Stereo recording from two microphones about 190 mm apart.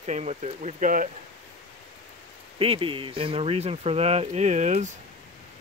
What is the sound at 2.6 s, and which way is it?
Speech, 30° right (ahead or behind).